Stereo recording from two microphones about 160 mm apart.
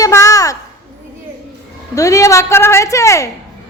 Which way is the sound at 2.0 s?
20° left (ahead or behind).